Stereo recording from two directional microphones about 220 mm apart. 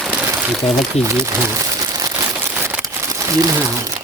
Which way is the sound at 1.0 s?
10° right (ahead or behind).